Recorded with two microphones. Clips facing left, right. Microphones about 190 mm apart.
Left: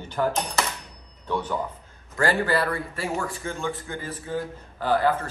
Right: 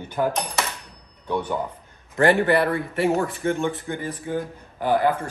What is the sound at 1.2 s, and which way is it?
A man's voice, 15° right (ahead or behind).